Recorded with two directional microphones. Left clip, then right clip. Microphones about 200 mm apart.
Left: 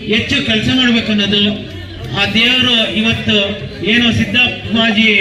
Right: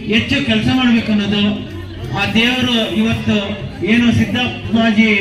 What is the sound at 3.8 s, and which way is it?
A man's voice, 20° left (ahead or behind).